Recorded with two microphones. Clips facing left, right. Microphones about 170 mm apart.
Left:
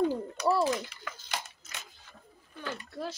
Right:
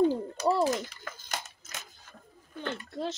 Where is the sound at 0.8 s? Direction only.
45° right (ahead or behind).